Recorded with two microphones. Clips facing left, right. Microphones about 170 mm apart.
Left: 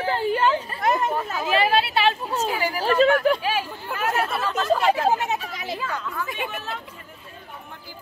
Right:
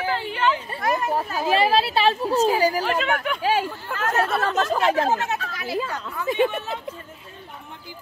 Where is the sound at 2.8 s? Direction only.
35° left (ahead or behind).